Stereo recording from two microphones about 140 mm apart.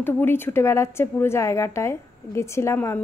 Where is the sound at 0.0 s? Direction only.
15° left (ahead or behind).